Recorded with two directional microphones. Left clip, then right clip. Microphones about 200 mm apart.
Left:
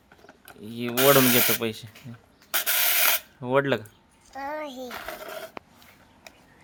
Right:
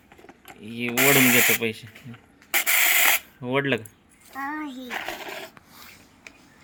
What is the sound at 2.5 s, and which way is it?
Rub, 15° left (ahead or behind).